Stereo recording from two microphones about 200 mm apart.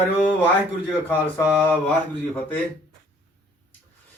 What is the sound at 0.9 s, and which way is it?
Speech, 10° left (ahead or behind).